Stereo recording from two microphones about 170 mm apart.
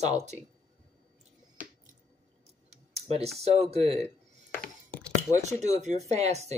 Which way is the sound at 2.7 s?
40° right (ahead or behind).